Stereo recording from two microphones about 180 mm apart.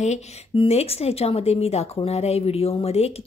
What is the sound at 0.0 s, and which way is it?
A woman's voice, 35° left (ahead or behind).